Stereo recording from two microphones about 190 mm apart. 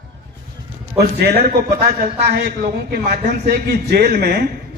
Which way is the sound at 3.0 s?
40° right (ahead or behind).